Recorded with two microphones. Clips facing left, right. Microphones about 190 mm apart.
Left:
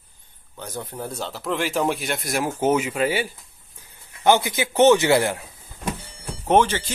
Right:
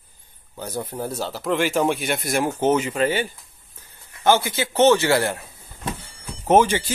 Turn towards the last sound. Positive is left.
turn(degrees=-10)  # may be behind; listen again after turning